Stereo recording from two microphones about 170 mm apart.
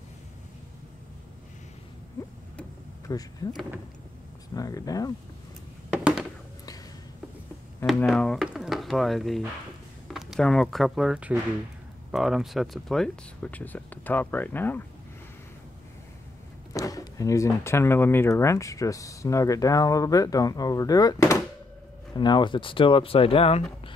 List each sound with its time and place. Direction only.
3.1 s speech: 20° left (ahead or behind)
4.6 s speech: 20° left (ahead or behind)
8.0 s speech: 5° left (ahead or behind)
16.7 s speech: 20° left (ahead or behind)